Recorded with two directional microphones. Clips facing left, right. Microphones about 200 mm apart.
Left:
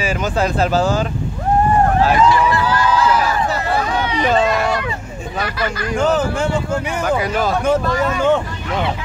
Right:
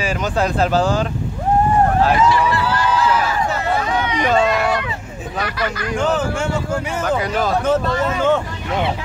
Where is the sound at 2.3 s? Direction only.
45° left (ahead or behind).